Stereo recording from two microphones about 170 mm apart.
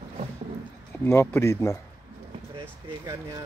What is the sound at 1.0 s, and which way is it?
Speech, 15° left (ahead or behind).